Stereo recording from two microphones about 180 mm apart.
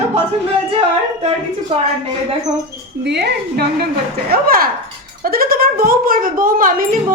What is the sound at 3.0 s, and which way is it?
Speech, 70° right (ahead or behind).